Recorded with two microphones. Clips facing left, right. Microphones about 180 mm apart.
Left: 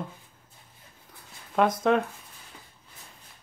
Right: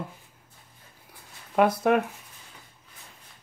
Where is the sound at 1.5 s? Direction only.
10° right (ahead or behind).